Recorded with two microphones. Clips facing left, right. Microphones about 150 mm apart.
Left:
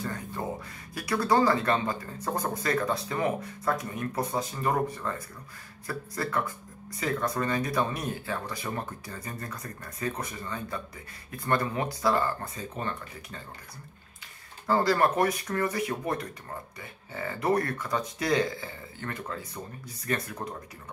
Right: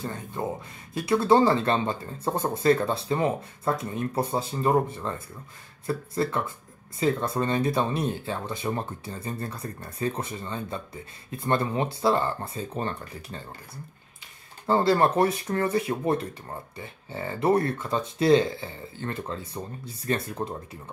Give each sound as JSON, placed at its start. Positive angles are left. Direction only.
{"t": 0.0, "sound": "speech", "side_deg": -25}
{"t": 14.7, "sound": "speech", "side_deg": -25}